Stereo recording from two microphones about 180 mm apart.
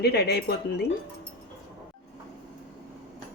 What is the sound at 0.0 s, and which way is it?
Speech, 65° left (ahead or behind).